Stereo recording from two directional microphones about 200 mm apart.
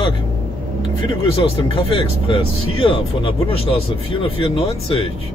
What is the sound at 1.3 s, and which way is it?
Speech, 25° left (ahead or behind).